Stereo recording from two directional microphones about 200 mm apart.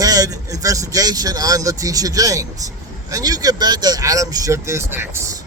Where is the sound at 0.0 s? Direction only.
15° right (ahead or behind).